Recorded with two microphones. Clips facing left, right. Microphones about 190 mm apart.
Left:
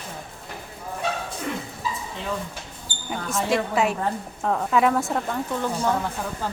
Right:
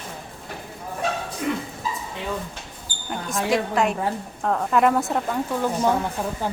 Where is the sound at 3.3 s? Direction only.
Centre (ahead or behind).